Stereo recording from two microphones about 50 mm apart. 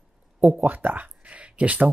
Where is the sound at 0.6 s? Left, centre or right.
Right.